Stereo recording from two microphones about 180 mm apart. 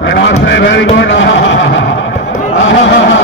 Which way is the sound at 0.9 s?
80° left.